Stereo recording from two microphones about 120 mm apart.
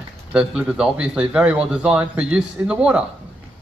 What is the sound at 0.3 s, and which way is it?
Speech, 10° right (ahead or behind).